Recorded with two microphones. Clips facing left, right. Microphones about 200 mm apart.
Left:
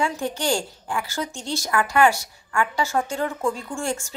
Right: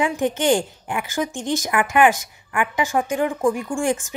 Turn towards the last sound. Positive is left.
turn(degrees=-15)  # may be behind; listen again after turning